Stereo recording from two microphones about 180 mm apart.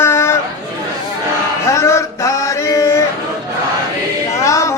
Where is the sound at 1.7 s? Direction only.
15° left (ahead or behind).